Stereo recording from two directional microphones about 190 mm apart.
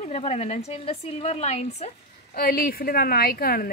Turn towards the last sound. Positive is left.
turn(degrees=50)  # may be behind; listen again after turning